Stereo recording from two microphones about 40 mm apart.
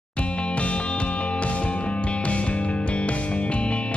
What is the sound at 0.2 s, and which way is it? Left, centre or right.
Music, left.